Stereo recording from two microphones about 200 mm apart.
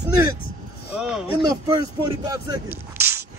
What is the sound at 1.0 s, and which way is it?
Speech, 5° right (ahead or behind).